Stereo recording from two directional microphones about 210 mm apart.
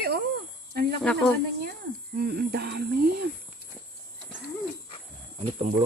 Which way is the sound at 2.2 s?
50° right (ahead or behind).